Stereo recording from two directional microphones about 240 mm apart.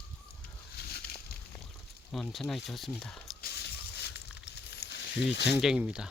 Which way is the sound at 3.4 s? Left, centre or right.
Left.